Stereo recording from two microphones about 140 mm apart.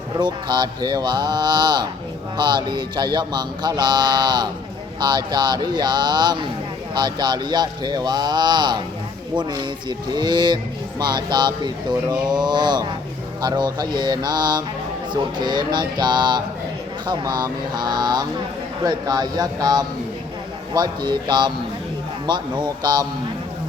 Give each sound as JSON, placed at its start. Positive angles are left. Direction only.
{"t": 0.2, "sound": "speech", "side_deg": -30}